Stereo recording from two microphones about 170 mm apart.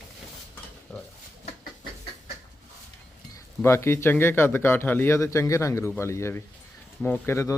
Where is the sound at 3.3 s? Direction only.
15° left (ahead or behind).